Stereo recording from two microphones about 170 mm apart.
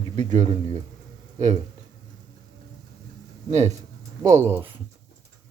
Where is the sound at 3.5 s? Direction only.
40° right (ahead or behind).